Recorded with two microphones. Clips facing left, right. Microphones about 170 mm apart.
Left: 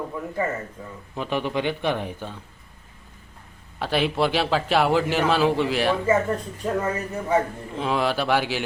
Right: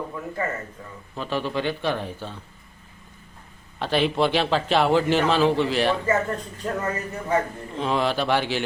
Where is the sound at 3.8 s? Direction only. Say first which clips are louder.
Right 1 dB; 5° left (ahead or behind).